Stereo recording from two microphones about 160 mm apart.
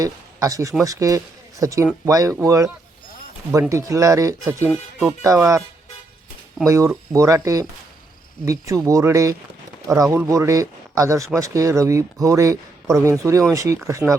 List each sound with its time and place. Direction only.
0.0 s speech: 20° right (ahead or behind)
6.7 s speech: 20° right (ahead or behind)